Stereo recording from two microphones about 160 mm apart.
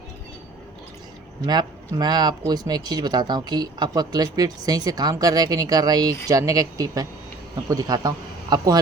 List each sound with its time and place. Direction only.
1.5 s a man's voice: 25° right (ahead or behind)